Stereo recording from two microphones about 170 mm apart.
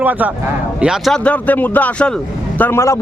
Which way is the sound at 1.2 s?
10° left (ahead or behind).